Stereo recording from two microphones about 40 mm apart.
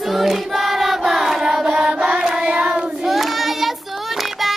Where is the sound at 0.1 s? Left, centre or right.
Centre.